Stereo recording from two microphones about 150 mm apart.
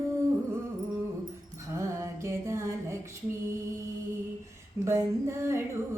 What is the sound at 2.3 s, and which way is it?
Music, 20° right (ahead or behind).